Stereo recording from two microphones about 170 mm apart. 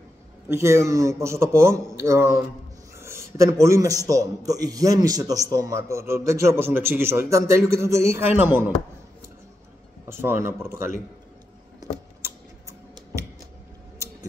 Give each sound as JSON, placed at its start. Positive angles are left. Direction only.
{"t": 0.5, "sound": "a man's voice", "side_deg": -15}
{"t": 10.0, "sound": "a man's voice", "side_deg": -15}
{"t": 11.8, "sound": "a sound", "side_deg": -15}